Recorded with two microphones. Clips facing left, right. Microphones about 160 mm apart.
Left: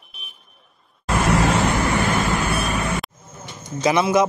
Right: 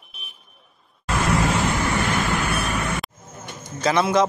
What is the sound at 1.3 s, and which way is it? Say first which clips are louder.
Vehicle: left 3 dB; 75° left (ahead or behind).